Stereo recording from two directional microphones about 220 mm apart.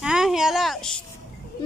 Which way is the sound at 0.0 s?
5° right (ahead or behind).